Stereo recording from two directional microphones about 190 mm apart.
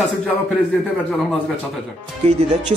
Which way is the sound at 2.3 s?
35° right (ahead or behind).